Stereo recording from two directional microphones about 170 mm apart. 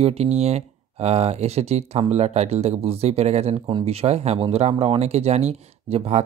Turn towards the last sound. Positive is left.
turn(degrees=-40)  # may be behind; listen again after turning